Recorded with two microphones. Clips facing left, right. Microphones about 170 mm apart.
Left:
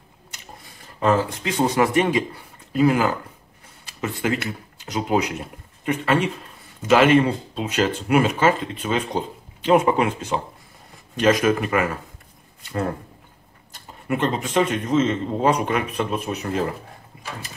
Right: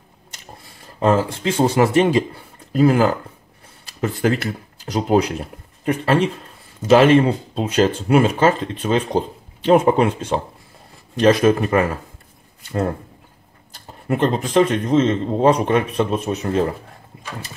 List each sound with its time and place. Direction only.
0.9 s speech: 30° right (ahead or behind)
14.0 s speech: 35° right (ahead or behind)
17.1 s a sound: 30° right (ahead or behind)